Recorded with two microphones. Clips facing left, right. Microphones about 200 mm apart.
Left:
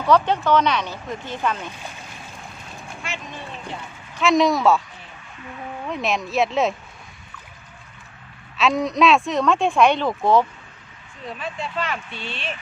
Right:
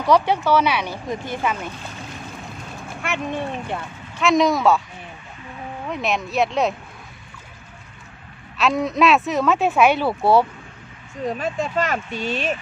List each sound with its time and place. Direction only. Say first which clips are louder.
0.0 s speech: right 1 dB; 10° right (ahead or behind)
3.0 s speech: right 10 dB; 60° right (ahead or behind)
4.2 s speech: even; centre (ahead or behind)
5.9 s speech: even; centre (ahead or behind)
8.5 s speech: even; centre (ahead or behind)
11.2 s speech: right 7 dB; 45° right (ahead or behind)